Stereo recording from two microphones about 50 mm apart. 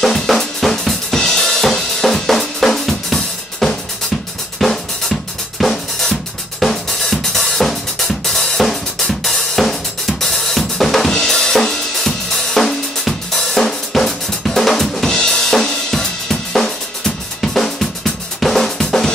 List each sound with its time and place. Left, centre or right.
0.0 s drum kit: centre